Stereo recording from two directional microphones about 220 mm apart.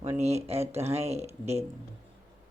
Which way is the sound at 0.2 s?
30° right (ahead or behind).